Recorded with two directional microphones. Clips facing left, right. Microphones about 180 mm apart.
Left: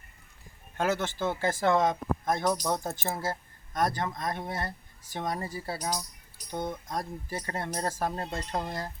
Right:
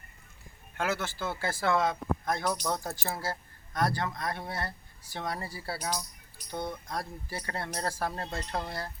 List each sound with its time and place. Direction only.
0.8 s speech: 20° left (ahead or behind)